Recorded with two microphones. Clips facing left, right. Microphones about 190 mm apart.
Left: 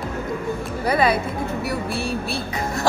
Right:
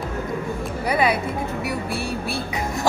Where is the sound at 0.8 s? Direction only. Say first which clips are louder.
Left 2 dB; 15° right (ahead or behind).